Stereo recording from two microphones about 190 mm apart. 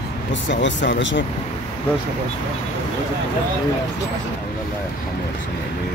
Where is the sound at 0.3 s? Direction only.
70° left (ahead or behind).